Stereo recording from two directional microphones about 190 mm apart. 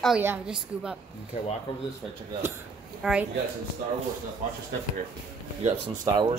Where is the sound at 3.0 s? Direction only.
5° right (ahead or behind).